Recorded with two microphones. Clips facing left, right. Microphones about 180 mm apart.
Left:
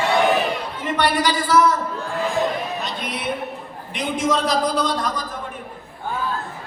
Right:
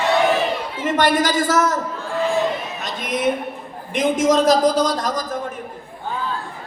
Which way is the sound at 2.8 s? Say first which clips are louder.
Right 6 dB; 45° right (ahead or behind).